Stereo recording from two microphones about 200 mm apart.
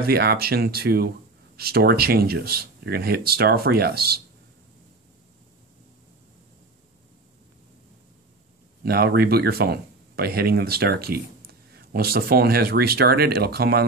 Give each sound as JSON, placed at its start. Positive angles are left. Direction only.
{"t": 0.0, "sound": "speech", "side_deg": -50}
{"t": 8.8, "sound": "speech", "side_deg": -50}